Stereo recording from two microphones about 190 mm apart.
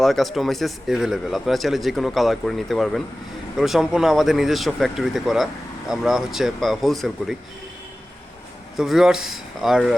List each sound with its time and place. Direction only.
0.0 s speech: centre (ahead or behind)
8.7 s speech: centre (ahead or behind)